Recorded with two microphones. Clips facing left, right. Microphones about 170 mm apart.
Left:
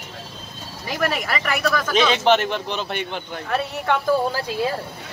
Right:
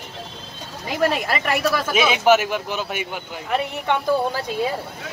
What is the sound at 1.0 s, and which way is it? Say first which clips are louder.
Speech: right 3 dB; 25° right (ahead or behind).